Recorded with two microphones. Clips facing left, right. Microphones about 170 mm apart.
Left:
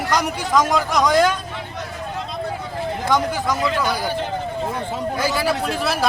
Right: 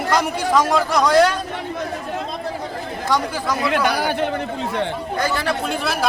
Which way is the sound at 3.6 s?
70° right (ahead or behind).